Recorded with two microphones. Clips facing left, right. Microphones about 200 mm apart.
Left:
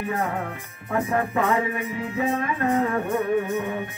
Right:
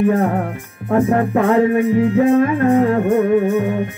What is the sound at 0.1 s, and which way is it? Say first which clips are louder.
Music: right 10 dB; 55° right (ahead or behind).